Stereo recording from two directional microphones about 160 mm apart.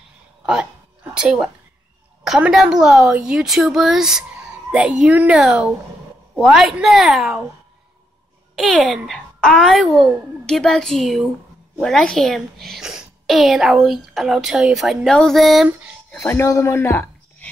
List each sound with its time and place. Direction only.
1.1 s a woman's voice: 5° right (ahead or behind)
8.5 s a woman's voice: centre (ahead or behind)
16.1 s a woman's voice: 15° left (ahead or behind)